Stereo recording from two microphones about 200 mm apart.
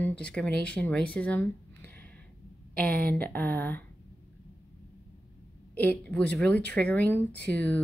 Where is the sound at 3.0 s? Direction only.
10° left (ahead or behind).